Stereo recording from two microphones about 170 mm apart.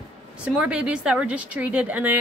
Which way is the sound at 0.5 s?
5° right (ahead or behind).